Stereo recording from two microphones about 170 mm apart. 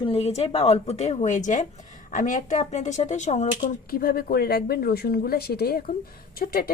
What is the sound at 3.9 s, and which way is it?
Speech, 65° left (ahead or behind).